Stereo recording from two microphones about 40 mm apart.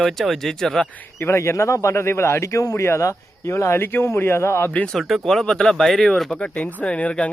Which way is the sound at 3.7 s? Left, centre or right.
Left.